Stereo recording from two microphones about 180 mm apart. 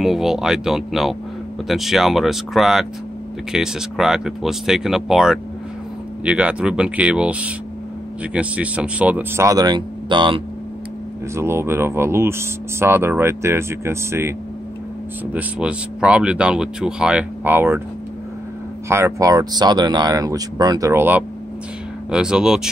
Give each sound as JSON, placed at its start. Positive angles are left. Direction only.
{"t": 0.0, "sound": "speech", "side_deg": 0}
{"t": 11.3, "sound": "speech", "side_deg": -15}
{"t": 15.3, "sound": "speech", "side_deg": -5}
{"t": 18.9, "sound": "speech", "side_deg": -15}